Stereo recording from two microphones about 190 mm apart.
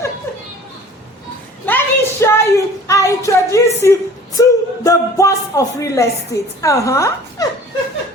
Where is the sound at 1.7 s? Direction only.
10° left (ahead or behind).